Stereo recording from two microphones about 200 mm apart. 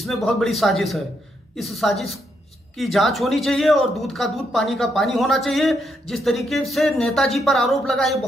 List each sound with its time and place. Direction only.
0.0 s speech: centre (ahead or behind)